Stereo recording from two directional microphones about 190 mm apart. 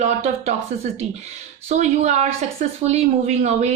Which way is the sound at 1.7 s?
35° right (ahead or behind).